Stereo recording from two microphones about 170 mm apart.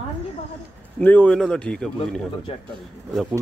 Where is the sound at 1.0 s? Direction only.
10° left (ahead or behind).